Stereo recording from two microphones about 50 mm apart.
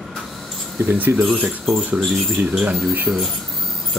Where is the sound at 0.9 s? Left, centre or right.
Right.